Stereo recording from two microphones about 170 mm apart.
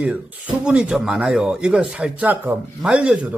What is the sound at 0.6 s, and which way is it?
Speech, 5° right (ahead or behind).